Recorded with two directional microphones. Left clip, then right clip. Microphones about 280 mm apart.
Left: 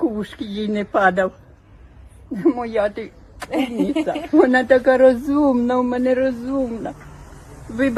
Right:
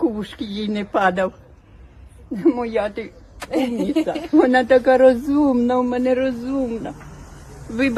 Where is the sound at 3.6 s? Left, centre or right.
Left.